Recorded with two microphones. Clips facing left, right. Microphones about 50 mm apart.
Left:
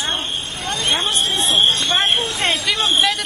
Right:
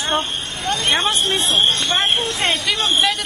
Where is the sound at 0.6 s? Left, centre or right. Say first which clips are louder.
Right 2 dB; right.